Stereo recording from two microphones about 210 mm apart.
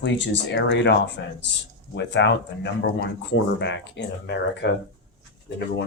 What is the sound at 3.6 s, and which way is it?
Speech, 55° left (ahead or behind).